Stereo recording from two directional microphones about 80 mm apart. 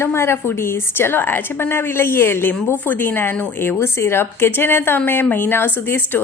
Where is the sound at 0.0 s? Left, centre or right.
Left.